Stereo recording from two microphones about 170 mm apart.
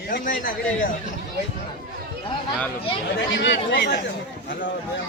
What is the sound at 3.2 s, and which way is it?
Speech, 90° left.